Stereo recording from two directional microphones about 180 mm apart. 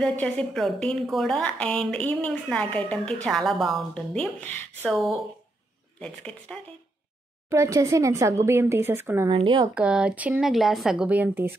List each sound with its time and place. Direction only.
0.0 s a woman's voice: 5° left (ahead or behind)
7.4 s speech: 15° right (ahead or behind)
9.4 s speech: 30° right (ahead or behind)
9.8 s a woman's voice: 5° right (ahead or behind)